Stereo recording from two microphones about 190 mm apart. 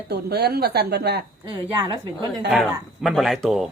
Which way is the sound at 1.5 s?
20° right (ahead or behind).